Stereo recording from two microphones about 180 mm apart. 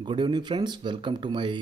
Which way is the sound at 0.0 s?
25° right (ahead or behind).